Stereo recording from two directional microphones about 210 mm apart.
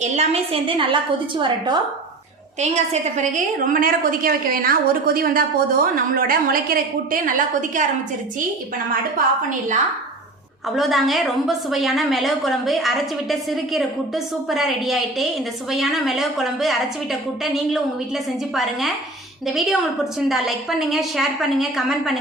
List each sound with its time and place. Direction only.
0.0 s a woman's voice: 30° right (ahead or behind)
2.6 s a woman's voice: 30° right (ahead or behind)
9.5 s a woman's voice: 35° right (ahead or behind)
10.8 s a woman's voice: centre (ahead or behind)
20.1 s a woman's voice: centre (ahead or behind)